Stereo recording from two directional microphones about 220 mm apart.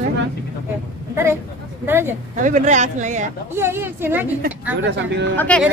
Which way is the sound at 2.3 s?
35° right (ahead or behind).